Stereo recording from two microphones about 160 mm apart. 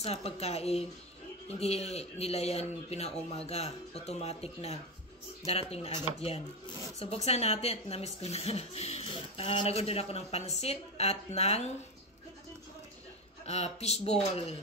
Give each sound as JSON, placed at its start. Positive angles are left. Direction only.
{"t": 0.0, "sound": "speech", "side_deg": 40}
{"t": 13.5, "sound": "speech", "side_deg": 40}